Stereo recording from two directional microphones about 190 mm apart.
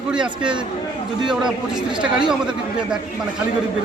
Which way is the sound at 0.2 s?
25° right (ahead or behind).